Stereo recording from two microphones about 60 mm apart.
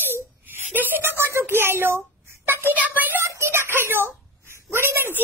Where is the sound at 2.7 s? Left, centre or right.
Right.